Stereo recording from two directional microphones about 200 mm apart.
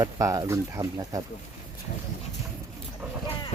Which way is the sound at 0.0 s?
15° right (ahead or behind).